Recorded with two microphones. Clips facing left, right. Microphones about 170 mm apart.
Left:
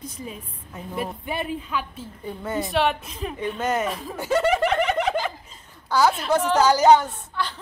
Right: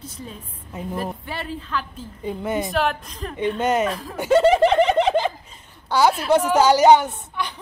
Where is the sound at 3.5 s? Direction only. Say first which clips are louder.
Right 4 dB; 20° right (ahead or behind).